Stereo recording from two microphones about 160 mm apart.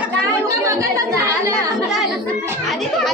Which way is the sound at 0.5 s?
20° right (ahead or behind).